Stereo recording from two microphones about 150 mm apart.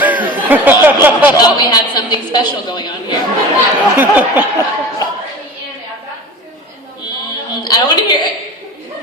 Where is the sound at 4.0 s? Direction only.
10° right (ahead or behind).